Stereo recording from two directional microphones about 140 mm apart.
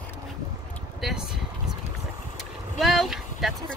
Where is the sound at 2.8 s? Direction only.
Centre (ahead or behind).